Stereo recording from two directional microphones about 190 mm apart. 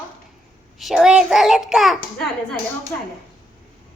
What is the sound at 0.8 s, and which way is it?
A child's voice, centre (ahead or behind).